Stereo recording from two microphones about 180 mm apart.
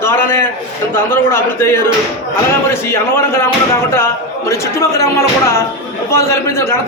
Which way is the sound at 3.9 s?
15° left (ahead or behind).